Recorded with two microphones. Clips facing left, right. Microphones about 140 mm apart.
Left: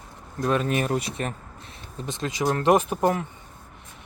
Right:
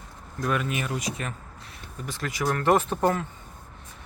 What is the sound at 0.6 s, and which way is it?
Speech, 40° left (ahead or behind).